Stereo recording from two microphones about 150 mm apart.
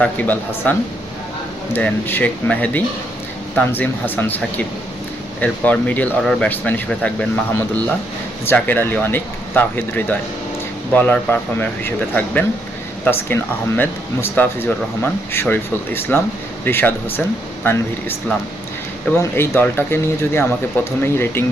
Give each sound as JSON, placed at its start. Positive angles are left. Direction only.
{"t": 0.0, "sound": "speech", "side_deg": 10}
{"t": 19.1, "sound": "speech", "side_deg": 15}